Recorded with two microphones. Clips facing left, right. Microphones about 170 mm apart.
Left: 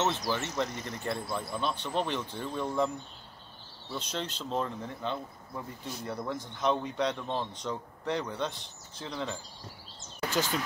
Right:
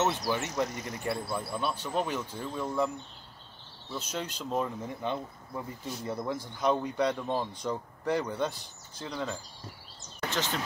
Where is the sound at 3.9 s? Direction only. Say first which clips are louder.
Even; 10° right (ahead or behind).